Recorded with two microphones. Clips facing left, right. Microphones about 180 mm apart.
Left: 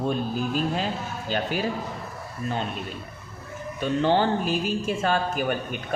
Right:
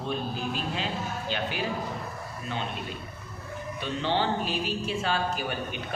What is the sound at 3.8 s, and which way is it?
A man's voice, 45° left (ahead or behind).